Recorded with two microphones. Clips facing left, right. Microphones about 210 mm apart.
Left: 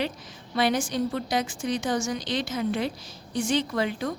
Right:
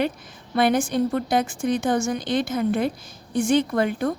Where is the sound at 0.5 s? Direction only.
55° right (ahead or behind).